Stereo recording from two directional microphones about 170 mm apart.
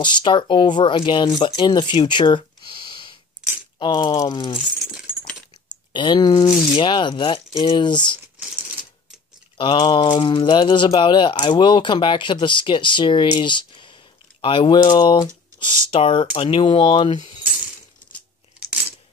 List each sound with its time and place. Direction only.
0.0 s speech: 25° left (ahead or behind)
4.6 s keys jangling: centre (ahead or behind)
5.7 s speech: 25° left (ahead or behind)
9.6 s speech: 25° left (ahead or behind)